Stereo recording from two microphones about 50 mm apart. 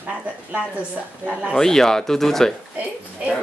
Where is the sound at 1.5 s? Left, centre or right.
Centre.